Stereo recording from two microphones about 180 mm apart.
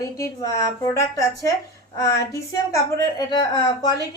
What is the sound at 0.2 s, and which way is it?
A woman's voice, 15° left (ahead or behind).